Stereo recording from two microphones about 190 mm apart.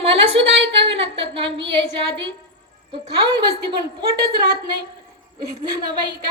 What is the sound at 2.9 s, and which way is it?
Speech, 25° right (ahead or behind).